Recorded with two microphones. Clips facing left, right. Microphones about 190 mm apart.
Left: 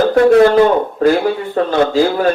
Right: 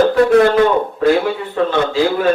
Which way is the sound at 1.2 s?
40° left (ahead or behind).